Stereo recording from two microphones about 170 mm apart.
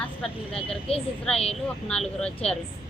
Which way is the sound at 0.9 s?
35° left (ahead or behind).